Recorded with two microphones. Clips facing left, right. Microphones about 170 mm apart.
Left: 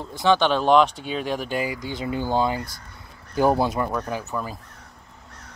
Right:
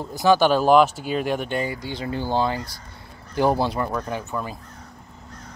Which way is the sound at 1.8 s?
15° left (ahead or behind).